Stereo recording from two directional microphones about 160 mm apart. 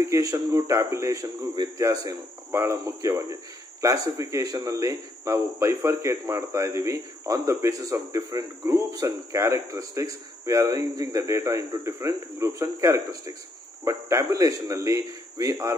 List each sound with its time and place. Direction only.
0.0 s speech: 20° right (ahead or behind)